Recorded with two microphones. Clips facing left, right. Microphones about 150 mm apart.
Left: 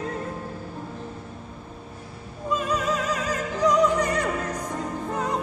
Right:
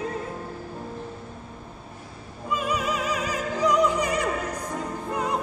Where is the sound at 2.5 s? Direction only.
10° right (ahead or behind).